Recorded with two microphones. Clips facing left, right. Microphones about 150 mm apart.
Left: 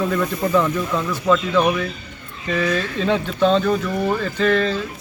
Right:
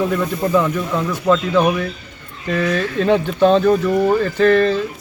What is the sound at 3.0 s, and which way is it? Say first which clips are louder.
Speech: right 5 dB; 10° right (ahead or behind).